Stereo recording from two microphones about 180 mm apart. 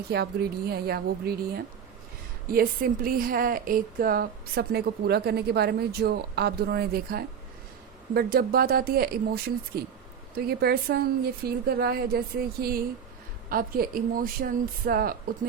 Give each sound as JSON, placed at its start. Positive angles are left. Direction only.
{"t": 0.1, "sound": "a woman's voice", "side_deg": -60}